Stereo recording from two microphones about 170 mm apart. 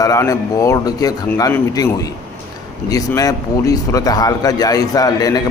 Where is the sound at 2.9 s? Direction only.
20° left (ahead or behind).